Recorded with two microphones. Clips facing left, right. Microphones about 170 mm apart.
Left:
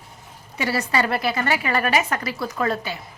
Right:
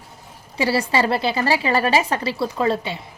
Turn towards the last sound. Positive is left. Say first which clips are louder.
# right 3 dB
turn(degrees=-25)  # may be behind; listen again after turning